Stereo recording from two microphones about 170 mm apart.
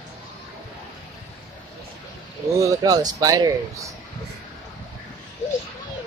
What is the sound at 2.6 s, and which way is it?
Speech, 20° right (ahead or behind).